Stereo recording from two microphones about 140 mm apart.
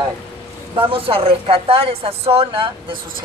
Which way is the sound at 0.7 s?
40° right (ahead or behind).